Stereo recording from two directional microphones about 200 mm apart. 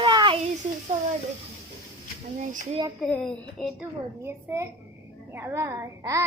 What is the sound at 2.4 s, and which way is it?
Speech, 40° right (ahead or behind).